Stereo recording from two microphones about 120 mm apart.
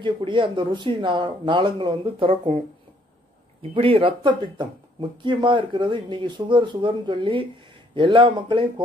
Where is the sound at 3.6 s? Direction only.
50° right (ahead or behind).